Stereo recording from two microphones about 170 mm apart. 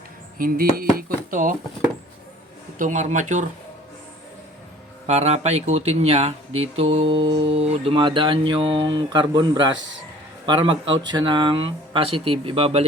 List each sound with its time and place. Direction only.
0.3 s speech: 55° right (ahead or behind)
2.7 s speech: 45° right (ahead or behind)
5.0 s a man's voice: 40° right (ahead or behind)